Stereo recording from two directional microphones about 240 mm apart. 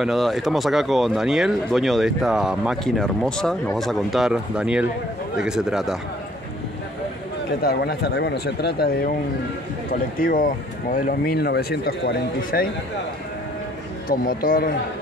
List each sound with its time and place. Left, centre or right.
0.0 s speech: centre
7.6 s speech: left
14.0 s speech: left